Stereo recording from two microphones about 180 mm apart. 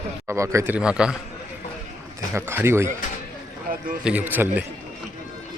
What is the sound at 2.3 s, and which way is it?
Speech, 15° right (ahead or behind).